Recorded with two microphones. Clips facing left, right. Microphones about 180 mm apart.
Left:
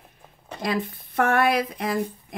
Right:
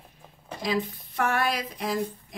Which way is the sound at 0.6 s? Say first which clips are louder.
Left 1 dB; 55° left (ahead or behind).